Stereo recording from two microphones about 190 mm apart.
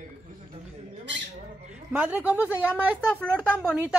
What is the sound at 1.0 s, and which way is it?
Squawk, 70° right (ahead or behind).